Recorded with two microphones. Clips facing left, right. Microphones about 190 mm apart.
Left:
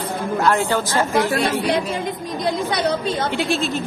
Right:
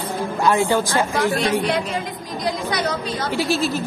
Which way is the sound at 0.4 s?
15° right (ahead or behind).